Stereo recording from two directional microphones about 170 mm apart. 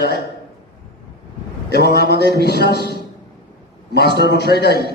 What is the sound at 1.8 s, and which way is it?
Speech, 70° left (ahead or behind).